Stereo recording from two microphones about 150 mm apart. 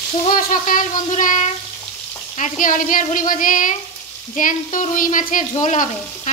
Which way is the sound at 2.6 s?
60° left (ahead or behind).